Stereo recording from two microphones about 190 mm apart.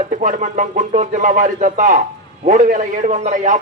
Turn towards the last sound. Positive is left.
turn(degrees=-40)  # may be behind; listen again after turning